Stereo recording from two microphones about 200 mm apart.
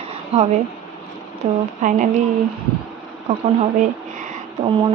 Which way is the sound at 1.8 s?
40° right (ahead or behind).